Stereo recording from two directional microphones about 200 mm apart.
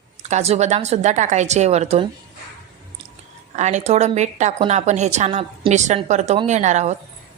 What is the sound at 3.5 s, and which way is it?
A woman's voice, 35° right (ahead or behind).